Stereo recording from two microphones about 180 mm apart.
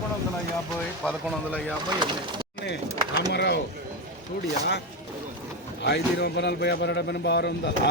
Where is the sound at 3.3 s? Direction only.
65° left (ahead or behind).